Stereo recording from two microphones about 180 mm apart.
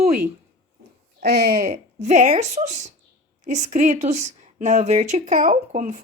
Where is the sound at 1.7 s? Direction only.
40° right (ahead or behind).